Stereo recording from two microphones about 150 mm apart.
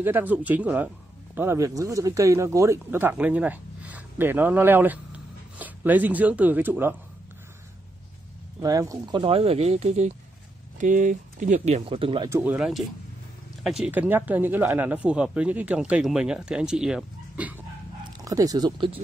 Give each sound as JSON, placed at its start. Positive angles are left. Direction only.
{"t": 0.0, "sound": "speech", "side_deg": -15}
{"t": 8.5, "sound": "speech", "side_deg": -25}
{"t": 10.8, "sound": "speech", "side_deg": -60}
{"t": 12.3, "sound": "speech", "side_deg": -10}
{"t": 18.2, "sound": "speech", "side_deg": -25}